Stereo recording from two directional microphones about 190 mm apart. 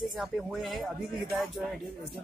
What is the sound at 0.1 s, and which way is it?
Speech, centre (ahead or behind).